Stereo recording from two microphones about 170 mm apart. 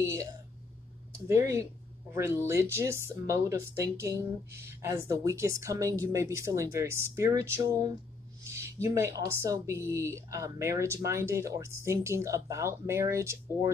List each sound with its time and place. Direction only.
0.0 s speech: 15° right (ahead or behind)